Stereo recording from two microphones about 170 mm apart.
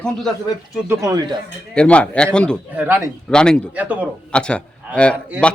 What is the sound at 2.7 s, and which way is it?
Speech, 10° right (ahead or behind).